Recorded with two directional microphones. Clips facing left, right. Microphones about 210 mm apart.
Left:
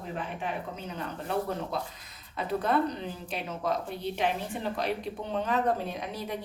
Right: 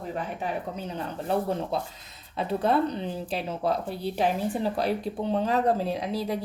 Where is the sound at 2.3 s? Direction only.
30° right (ahead or behind).